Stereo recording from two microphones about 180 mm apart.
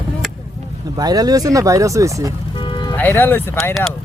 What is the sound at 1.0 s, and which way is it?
Speech, 20° right (ahead or behind).